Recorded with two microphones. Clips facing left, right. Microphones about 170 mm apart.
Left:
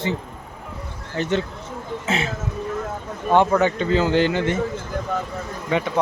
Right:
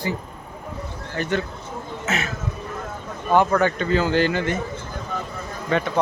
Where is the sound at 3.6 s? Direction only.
20° left (ahead or behind).